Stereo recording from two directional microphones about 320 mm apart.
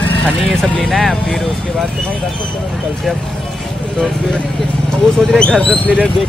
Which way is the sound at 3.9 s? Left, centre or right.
Centre.